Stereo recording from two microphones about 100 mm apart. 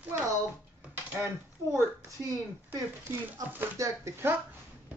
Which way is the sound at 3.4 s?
35° right (ahead or behind).